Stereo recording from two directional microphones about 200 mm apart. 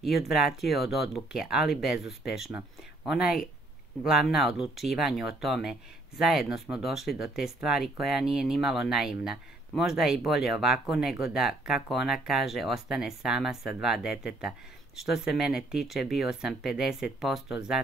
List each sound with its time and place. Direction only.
0.0 s speech: centre (ahead or behind)